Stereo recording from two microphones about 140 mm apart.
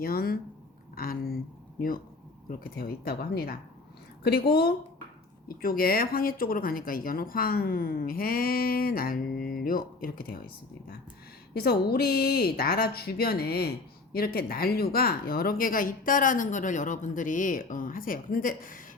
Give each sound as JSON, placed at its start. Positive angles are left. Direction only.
{"t": 0.0, "sound": "speech", "side_deg": 90}
{"t": 2.5, "sound": "speech", "side_deg": 90}
{"t": 11.5, "sound": "speech", "side_deg": 90}